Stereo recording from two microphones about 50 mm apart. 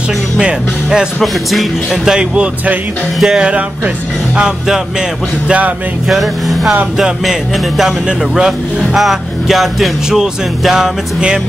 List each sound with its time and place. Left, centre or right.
0.4 s speech: centre
1.2 s speech: centre
1.9 s speech: centre
6.0 s speech: centre